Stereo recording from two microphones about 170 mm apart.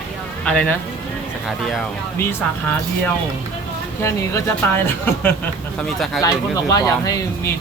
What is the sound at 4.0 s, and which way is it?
Speech, 15° left (ahead or behind).